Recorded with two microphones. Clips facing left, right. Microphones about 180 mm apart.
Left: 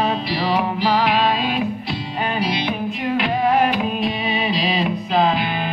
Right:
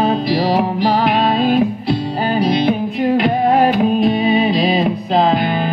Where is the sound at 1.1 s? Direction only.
45° right (ahead or behind).